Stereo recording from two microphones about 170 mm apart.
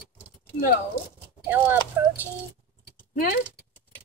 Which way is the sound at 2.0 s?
15° right (ahead or behind).